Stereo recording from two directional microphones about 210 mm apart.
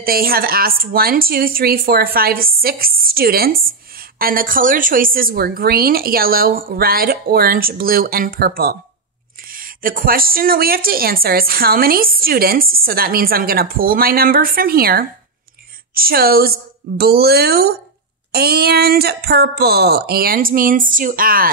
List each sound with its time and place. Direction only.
0.0 s speech: 45° right (ahead or behind)